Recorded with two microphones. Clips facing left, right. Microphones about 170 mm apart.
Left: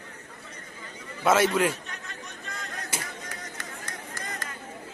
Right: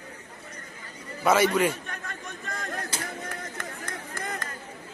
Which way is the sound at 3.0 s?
55° right (ahead or behind).